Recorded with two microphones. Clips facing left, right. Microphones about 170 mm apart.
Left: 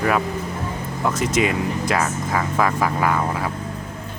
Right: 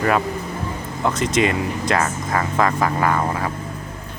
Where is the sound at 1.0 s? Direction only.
5° left (ahead or behind).